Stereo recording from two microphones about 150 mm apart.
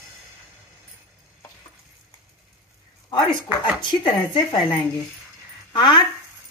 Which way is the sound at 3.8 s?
30° left (ahead or behind).